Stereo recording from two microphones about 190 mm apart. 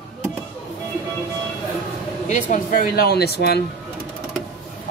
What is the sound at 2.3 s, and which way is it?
Speech, 45° left (ahead or behind).